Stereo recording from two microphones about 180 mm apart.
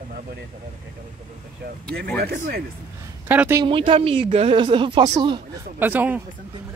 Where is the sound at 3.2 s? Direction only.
10° right (ahead or behind).